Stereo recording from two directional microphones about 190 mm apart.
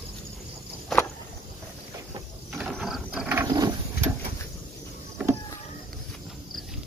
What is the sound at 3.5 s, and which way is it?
Mechanisms, 20° right (ahead or behind).